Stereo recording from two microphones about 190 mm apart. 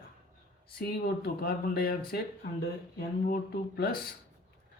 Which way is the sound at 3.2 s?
55° left (ahead or behind).